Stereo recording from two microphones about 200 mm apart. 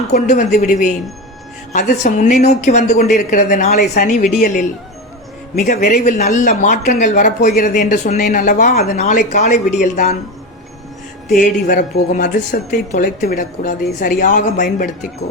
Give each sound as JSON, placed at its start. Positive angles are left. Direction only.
{"t": 0.1, "sound": "speech", "side_deg": 40}
{"t": 11.3, "sound": "speech", "side_deg": 40}